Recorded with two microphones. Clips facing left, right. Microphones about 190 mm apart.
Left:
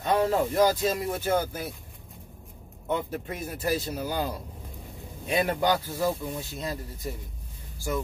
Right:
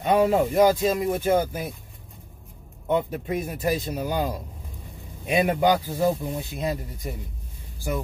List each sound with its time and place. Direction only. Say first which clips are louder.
0.0 s a man's voice: right 4 dB; 15° right (ahead or behind)
2.9 s a man's voice: right 6 dB; 15° right (ahead or behind)